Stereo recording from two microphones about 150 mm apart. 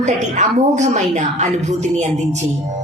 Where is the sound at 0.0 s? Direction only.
50° right (ahead or behind).